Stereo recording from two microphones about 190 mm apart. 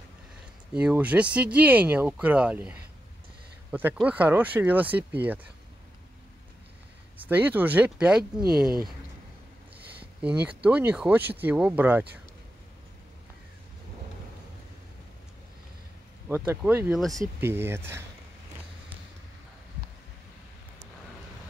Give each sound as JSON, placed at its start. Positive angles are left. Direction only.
{"t": 0.7, "sound": "speech", "side_deg": -5}
{"t": 3.7, "sound": "speech", "side_deg": -10}
{"t": 7.2, "sound": "speech", "side_deg": -10}
{"t": 10.2, "sound": "speech", "side_deg": -10}
{"t": 16.3, "sound": "speech", "side_deg": -10}